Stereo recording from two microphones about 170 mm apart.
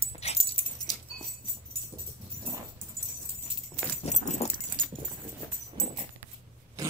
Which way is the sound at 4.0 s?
45° left (ahead or behind).